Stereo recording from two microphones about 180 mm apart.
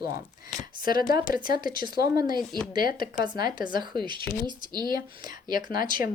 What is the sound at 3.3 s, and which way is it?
Speech, 25° right (ahead or behind).